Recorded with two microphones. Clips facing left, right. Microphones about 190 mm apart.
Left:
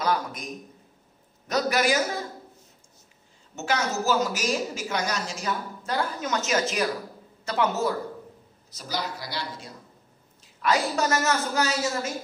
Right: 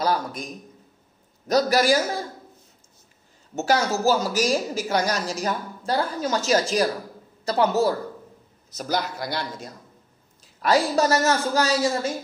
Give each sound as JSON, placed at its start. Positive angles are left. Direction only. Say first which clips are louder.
{"t": 0.0, "sound": "a sound", "louder": "right 2 dB", "side_deg": -35}
{"t": 1.5, "sound": "a woman's voice", "louder": "right 5 dB", "side_deg": -35}
{"t": 3.5, "sound": "a woman's voice", "louder": "right 5 dB", "side_deg": -35}
{"t": 8.7, "sound": "a man's voice", "louder": "right 5 dB", "side_deg": -50}
{"t": 10.6, "sound": "a woman's voice", "louder": "right 4 dB", "side_deg": -35}